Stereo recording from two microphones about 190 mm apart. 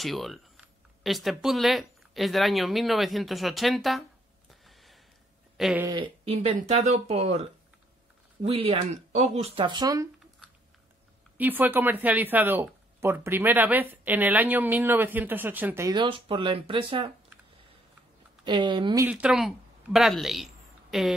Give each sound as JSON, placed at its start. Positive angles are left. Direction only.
{"t": 0.0, "sound": "speech", "side_deg": 0}
{"t": 4.5, "sound": "a sound", "side_deg": 0}
{"t": 6.2, "sound": "speech", "side_deg": -30}
{"t": 11.3, "sound": "speech", "side_deg": -10}
{"t": 15.9, "sound": "speech", "side_deg": -25}
{"t": 18.4, "sound": "speech", "side_deg": -25}
{"t": 19.0, "sound": "a man's voice", "side_deg": -5}